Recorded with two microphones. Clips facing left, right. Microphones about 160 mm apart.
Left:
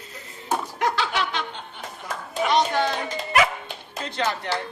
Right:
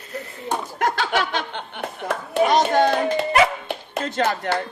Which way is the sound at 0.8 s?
50° right (ahead or behind).